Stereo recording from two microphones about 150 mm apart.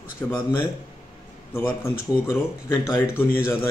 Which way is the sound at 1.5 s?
20° left (ahead or behind).